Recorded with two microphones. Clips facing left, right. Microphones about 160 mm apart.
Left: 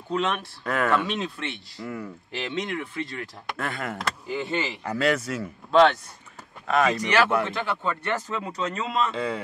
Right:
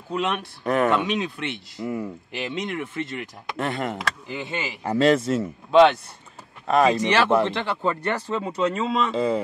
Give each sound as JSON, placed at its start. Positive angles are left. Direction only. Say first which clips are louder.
{"t": 0.1, "sound": "speech", "louder": "even", "side_deg": -5}
{"t": 0.7, "sound": "speech", "louder": "right 3 dB", "side_deg": -20}
{"t": 1.1, "sound": "speech", "louder": "right 4 dB", "side_deg": 0}
{"t": 1.4, "sound": "speech", "louder": "right 4 dB", "side_deg": -20}
{"t": 4.8, "sound": "speech", "louder": "right 8 dB", "side_deg": -30}
{"t": 6.7, "sound": "speech", "louder": "right 4 dB", "side_deg": -30}
{"t": 8.5, "sound": "speech", "louder": "right 4 dB", "side_deg": 0}